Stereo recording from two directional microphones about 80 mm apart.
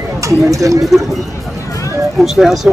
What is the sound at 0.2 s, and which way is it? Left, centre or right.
Speech, right.